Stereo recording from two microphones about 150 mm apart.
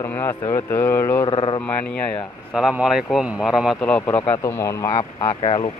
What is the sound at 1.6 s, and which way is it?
Speech, 5° left (ahead or behind).